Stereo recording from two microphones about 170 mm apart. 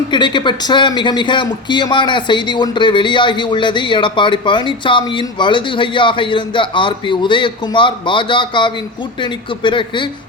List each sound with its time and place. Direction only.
0.1 s a man's voice: 25° left (ahead or behind)